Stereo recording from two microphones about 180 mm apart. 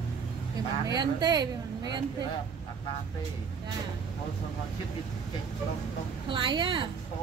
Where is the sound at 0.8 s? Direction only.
20° right (ahead or behind).